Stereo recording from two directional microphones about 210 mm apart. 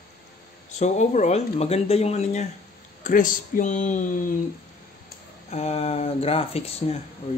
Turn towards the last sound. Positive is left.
turn(degrees=30)  # may be behind; listen again after turning